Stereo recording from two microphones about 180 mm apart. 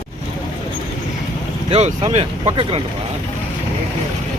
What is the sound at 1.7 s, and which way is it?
Speech, 35° right (ahead or behind).